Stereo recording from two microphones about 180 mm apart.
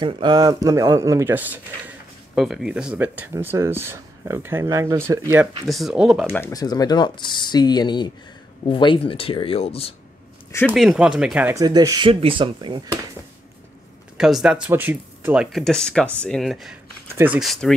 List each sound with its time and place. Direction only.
0.0 s speech: 25° right (ahead or behind)
5.7 s speech: centre (ahead or behind)
6.3 s speech: 15° left (ahead or behind); by 9.9 s 35° left (ahead or behind)
10.8 s speech: 5° right (ahead or behind)
11.5 s speech: 20° right (ahead or behind)
14.1 s speech: 5° right (ahead or behind)
15.5 s speech: 5° left (ahead or behind)